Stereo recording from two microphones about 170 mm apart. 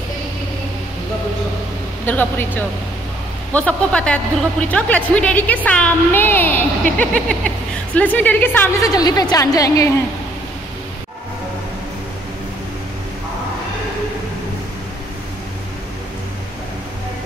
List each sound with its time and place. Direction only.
2.0 s speech: 10° left (ahead or behind)
8.9 s a woman's voice: 20° left (ahead or behind)